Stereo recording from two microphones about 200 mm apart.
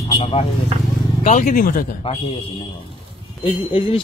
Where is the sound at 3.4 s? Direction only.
25° left (ahead or behind).